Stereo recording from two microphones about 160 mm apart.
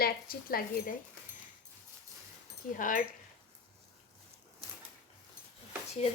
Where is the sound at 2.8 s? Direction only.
55° left (ahead or behind).